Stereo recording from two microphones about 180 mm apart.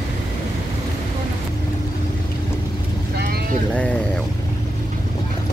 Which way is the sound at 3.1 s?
60° right (ahead or behind).